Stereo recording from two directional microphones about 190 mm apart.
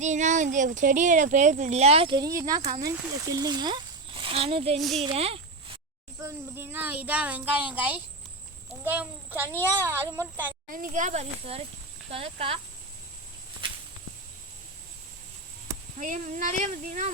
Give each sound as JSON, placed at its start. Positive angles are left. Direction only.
{"t": 0.0, "sound": "speech", "side_deg": -40}
{"t": 2.6, "sound": "speech", "side_deg": -45}
{"t": 3.1, "sound": "speech", "side_deg": -20}
{"t": 4.8, "sound": "speech", "side_deg": 0}
{"t": 5.0, "sound": "a sound", "side_deg": -30}
{"t": 6.2, "sound": "a child's voice", "side_deg": -10}
{"t": 10.7, "sound": "speech", "side_deg": -45}
{"t": 16.0, "sound": "speech", "side_deg": -40}